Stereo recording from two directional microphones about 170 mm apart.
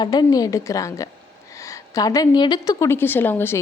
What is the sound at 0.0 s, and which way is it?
A woman's voice, 25° left (ahead or behind).